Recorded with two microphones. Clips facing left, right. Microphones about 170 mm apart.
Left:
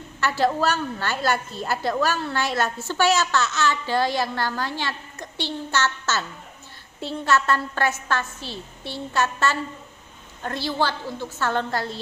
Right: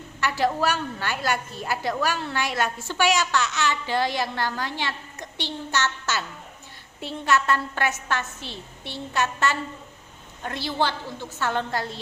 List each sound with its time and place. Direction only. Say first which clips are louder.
0.3 s a woman's voice: left 2 dB; 15° right (ahead or behind)
7.3 s a woman's voice: left 1 dB; 15° right (ahead or behind)
10.6 s a woman's voice: left 1 dB; 20° right (ahead or behind)